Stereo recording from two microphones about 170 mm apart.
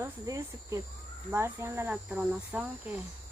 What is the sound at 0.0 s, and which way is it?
Speech, 20° right (ahead or behind).